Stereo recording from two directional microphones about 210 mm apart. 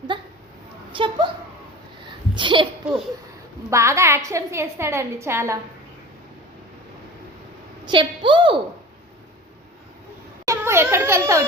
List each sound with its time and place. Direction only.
0.1 s a sound: 20° right (ahead or behind)
2.3 s a child's voice: 25° right (ahead or behind)
3.7 s a woman's voice: 15° right (ahead or behind)
7.9 s a woman's voice: 25° right (ahead or behind)
10.4 s children playing: 15° right (ahead or behind)